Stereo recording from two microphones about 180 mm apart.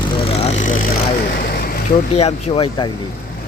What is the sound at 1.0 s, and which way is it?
Vehicle, 50° left (ahead or behind).